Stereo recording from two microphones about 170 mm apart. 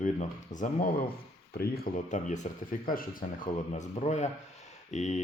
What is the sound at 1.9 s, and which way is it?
Speech, 45° left (ahead or behind).